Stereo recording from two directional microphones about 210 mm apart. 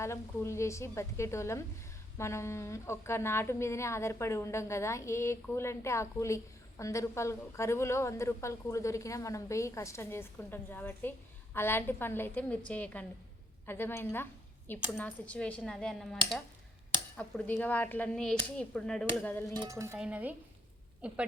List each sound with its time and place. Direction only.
0.0 s a woman's voice: 15° left (ahead or behind)
17.2 s a woman's voice: 5° left (ahead or behind)
19.5 s speech: 15° right (ahead or behind)